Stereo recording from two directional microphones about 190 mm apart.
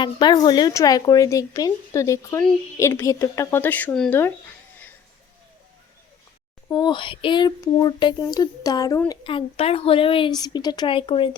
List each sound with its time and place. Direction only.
0.0 s speech: 20° left (ahead or behind); by 4.3 s 5° left (ahead or behind)
6.7 s speech: 25° left (ahead or behind)